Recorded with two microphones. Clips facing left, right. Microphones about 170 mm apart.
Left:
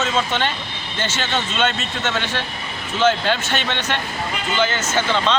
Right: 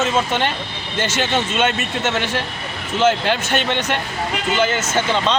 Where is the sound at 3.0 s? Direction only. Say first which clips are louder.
Right 1 dB; 5° right (ahead or behind).